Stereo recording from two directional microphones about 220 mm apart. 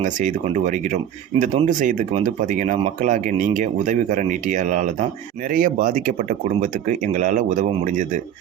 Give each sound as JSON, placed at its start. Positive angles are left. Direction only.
{"t": 0.0, "sound": "speech", "side_deg": -35}